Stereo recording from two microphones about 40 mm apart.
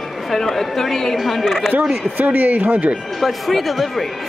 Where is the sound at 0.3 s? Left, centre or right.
Centre.